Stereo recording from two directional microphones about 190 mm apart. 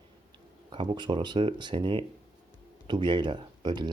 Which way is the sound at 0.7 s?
25° right (ahead or behind).